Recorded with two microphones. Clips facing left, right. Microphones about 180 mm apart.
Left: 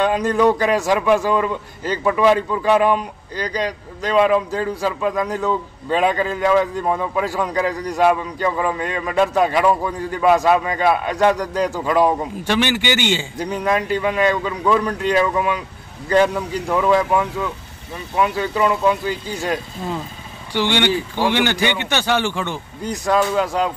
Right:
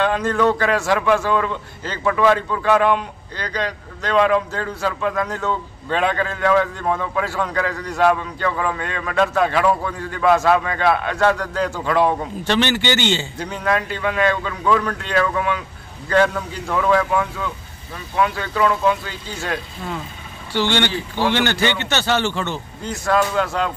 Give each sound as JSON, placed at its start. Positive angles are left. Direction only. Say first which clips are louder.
{"t": 0.0, "sound": "a man's voice", "louder": "left 2 dB", "side_deg": 15}